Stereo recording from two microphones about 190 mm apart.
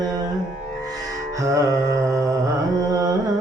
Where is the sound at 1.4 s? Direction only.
15° right (ahead or behind).